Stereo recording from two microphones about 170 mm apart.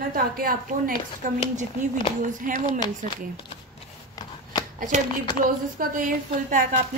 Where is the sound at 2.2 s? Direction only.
50° right (ahead or behind).